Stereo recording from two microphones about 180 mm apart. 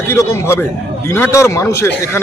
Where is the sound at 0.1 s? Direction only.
15° left (ahead or behind).